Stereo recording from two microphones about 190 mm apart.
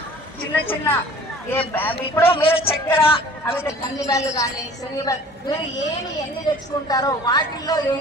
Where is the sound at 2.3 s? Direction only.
30° left (ahead or behind).